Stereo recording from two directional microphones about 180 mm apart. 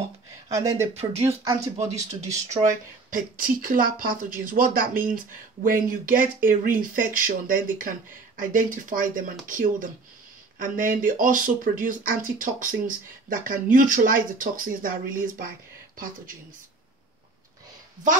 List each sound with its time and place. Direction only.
0.5 s speech: 15° right (ahead or behind)
3.1 s speech: 50° right (ahead or behind)